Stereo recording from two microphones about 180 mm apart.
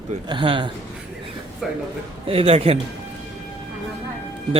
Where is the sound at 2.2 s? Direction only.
30° right (ahead or behind).